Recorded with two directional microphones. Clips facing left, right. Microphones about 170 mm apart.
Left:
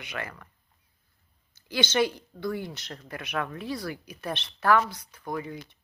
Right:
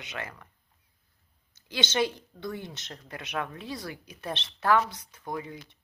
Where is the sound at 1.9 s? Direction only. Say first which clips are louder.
Left 2 dB; 20° right (ahead or behind).